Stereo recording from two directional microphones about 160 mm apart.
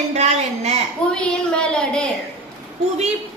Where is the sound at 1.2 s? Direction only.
5° left (ahead or behind).